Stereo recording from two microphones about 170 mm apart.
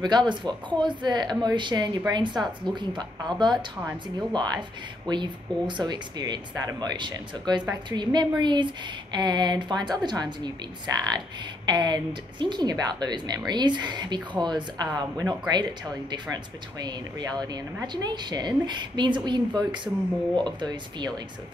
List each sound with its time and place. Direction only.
0.0 s speech: 25° right (ahead or behind)
16.8 s speech: 25° right (ahead or behind)